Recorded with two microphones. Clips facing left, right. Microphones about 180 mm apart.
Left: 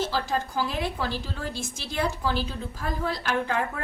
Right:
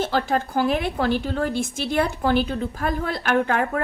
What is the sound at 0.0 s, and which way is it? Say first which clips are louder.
A woman's voice: right 5 dB; 60° right (ahead or behind).